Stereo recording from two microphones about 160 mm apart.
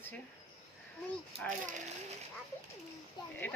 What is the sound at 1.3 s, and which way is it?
Speech, 35° right (ahead or behind).